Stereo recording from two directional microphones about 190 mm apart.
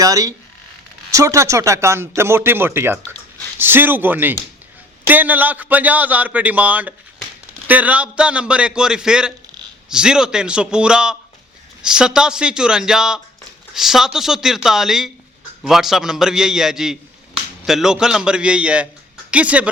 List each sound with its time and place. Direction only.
0.0 s a man's voice: 15° right (ahead or behind)